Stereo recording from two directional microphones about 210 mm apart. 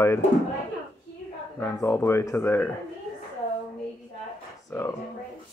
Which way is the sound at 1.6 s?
10° left (ahead or behind).